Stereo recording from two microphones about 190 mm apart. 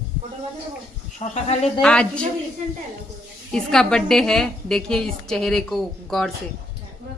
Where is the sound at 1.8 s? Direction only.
5° left (ahead or behind).